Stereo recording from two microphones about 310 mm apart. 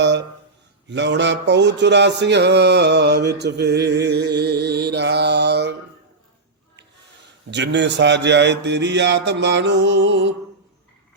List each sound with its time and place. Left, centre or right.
0.0 s a sound: right
0.9 s music: right
7.5 s music: right